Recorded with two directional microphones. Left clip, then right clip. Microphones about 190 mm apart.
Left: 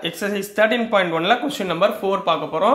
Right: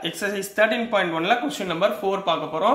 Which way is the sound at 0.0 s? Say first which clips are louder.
Left 2 dB; 20° left (ahead or behind).